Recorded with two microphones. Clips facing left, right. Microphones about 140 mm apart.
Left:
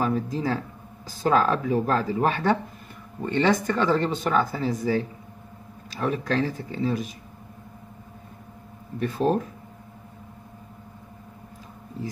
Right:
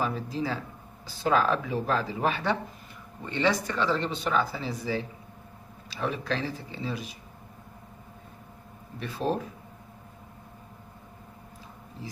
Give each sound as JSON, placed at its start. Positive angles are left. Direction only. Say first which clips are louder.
{"t": 0.0, "sound": "speech", "louder": "left 5 dB", "side_deg": 45}
{"t": 9.0, "sound": "speech", "louder": "left 6 dB", "side_deg": 45}